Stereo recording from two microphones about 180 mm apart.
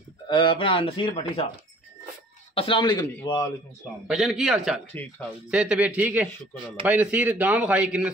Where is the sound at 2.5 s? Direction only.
30° left (ahead or behind).